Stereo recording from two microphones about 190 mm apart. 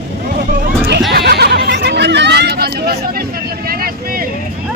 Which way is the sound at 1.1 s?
60° right (ahead or behind).